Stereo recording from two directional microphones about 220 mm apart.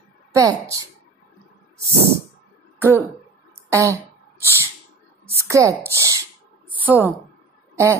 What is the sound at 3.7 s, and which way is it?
Speech, 15° right (ahead or behind).